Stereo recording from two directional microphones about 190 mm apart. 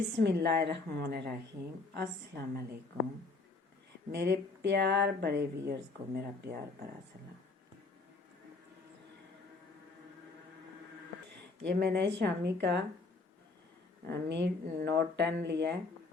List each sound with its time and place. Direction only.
0.2 s speech: 60° right (ahead or behind)
4.1 s speech: 60° right (ahead or behind)
11.6 s speech: 60° right (ahead or behind)
14.1 s speech: 65° right (ahead or behind)